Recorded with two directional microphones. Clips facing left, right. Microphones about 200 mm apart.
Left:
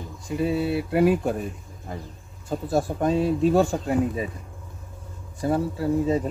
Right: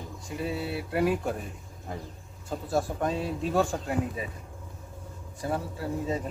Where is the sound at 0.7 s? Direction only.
15° left (ahead or behind).